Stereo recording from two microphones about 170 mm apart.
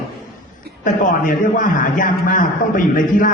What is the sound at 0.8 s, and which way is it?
A man's voice, 50° left (ahead or behind).